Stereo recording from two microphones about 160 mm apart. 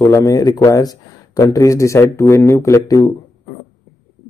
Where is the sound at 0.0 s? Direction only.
20° left (ahead or behind).